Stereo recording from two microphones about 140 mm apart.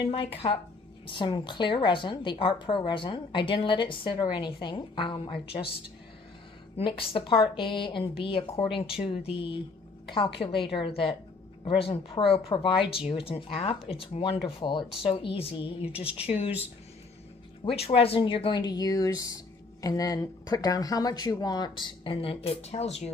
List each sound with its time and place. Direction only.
0.1 s a woman's voice: 40° left (ahead or behind)
6.8 s a woman's voice: 40° left (ahead or behind)
15.9 s speech: 10° right (ahead or behind)
16.3 s speech: 45° left (ahead or behind)
17.6 s speech: 45° left (ahead or behind)